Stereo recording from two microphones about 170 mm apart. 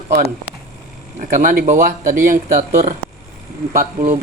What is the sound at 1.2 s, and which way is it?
Speech, 50° right (ahead or behind).